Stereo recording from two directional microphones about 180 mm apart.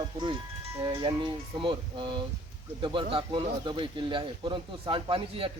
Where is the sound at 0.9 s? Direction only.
25° right (ahead or behind).